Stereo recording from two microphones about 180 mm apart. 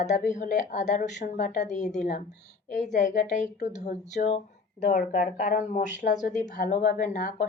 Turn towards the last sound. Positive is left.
turn(degrees=50)  # may be behind; listen again after turning